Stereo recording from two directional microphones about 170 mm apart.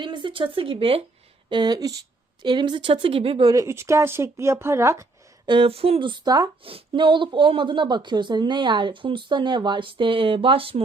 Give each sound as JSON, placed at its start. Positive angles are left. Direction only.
{"t": 0.0, "sound": "speech", "side_deg": -30}
{"t": 3.5, "sound": "speech", "side_deg": -20}
{"t": 5.5, "sound": "speech", "side_deg": -30}